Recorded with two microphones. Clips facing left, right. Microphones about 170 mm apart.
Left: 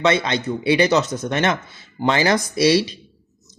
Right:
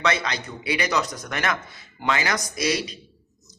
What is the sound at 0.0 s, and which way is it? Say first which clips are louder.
A man's voice: left 6 dB; 25° left (ahead or behind).